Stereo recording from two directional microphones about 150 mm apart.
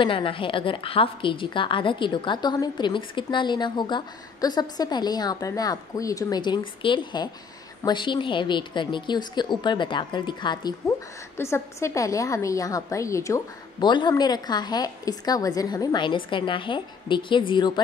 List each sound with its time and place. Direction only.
0.0 s a woman's voice: 35° left (ahead or behind)
11.3 s a woman's voice: 15° left (ahead or behind)